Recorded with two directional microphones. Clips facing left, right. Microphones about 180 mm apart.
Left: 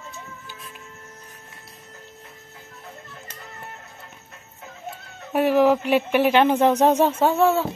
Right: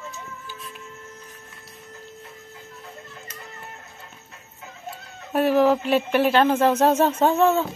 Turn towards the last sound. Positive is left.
turn(degrees=10)  # may be behind; listen again after turning